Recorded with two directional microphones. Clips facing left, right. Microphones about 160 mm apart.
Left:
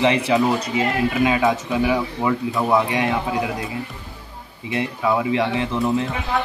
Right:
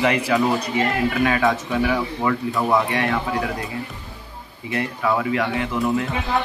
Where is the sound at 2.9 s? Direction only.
15° left (ahead or behind).